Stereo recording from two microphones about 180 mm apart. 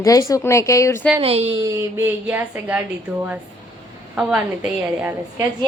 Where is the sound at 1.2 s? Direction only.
35° right (ahead or behind).